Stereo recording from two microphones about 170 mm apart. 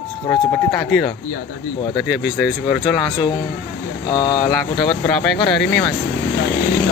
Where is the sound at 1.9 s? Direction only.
5° right (ahead or behind).